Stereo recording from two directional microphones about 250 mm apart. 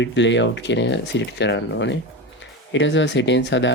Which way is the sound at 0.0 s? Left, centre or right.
Left.